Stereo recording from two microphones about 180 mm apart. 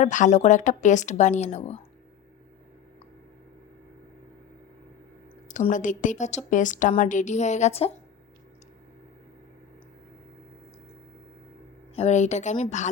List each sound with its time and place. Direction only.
0.0 s a woman's voice: 45° left (ahead or behind)
5.5 s a woman's voice: 45° left (ahead or behind)
11.9 s a woman's voice: 40° left (ahead or behind)